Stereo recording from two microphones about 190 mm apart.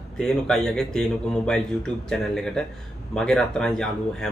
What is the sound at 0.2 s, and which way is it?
A man's voice, 5° left (ahead or behind).